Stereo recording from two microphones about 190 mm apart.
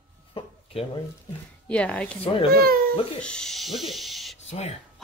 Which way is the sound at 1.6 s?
5° left (ahead or behind).